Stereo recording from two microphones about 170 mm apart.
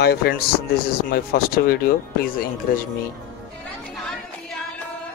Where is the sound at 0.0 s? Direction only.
70° left (ahead or behind).